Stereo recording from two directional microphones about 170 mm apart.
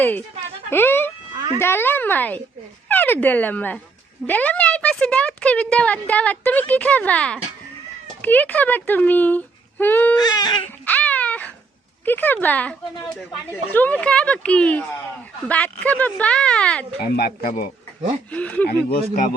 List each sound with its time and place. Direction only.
0.0 s a woman's voice: 10° left (ahead or behind)
10.2 s baby cry: 25° left (ahead or behind)
10.8 s a sound: 10° left (ahead or behind)
12.0 s a woman's voice: 10° left (ahead or behind)
13.7 s a woman's voice: 10° left (ahead or behind)
17.0 s speech: 65° left (ahead or behind)
18.3 s a woman's voice: 10° left (ahead or behind)
18.7 s speech: 65° left (ahead or behind)